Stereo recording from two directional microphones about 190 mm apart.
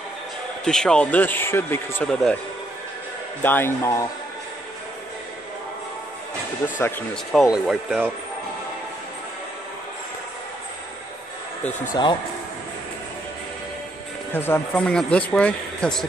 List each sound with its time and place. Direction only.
0.7 s speech: 5° left (ahead or behind)
3.4 s speech: 10° left (ahead or behind)
7.3 s speech: centre (ahead or behind)
11.9 s speech: 25° left (ahead or behind)
14.3 s speech: 10° left (ahead or behind)